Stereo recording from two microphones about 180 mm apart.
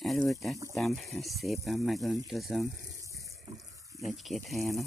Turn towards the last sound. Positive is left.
turn(degrees=0)  # may be behind; listen again after turning